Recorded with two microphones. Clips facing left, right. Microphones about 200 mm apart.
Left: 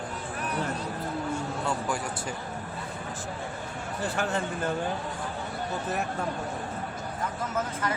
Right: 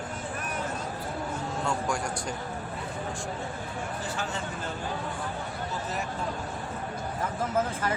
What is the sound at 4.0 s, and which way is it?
Speech, 60° left (ahead or behind).